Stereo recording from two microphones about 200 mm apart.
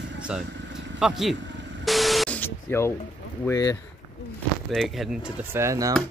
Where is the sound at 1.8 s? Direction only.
Centre (ahead or behind).